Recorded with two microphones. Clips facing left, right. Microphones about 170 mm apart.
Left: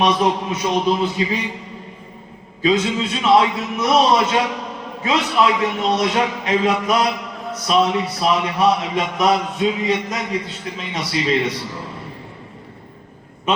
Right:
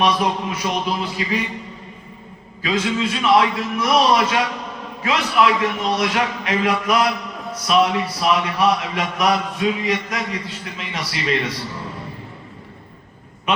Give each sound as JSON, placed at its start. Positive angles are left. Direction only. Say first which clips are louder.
{"t": 0.0, "sound": "a man's voice", "louder": "left 2 dB", "side_deg": 20}
{"t": 2.6, "sound": "a man's voice", "louder": "left 3 dB", "side_deg": 25}